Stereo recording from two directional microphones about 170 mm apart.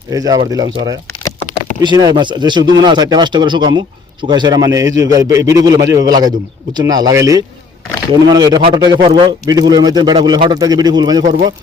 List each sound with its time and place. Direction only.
0.1 s speech: 20° right (ahead or behind)